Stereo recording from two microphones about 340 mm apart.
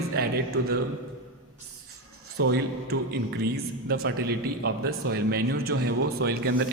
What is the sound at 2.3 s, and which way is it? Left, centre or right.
Speech, right.